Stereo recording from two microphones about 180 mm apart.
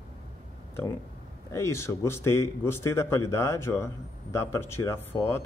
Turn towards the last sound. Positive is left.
turn(degrees=15)  # may be behind; listen again after turning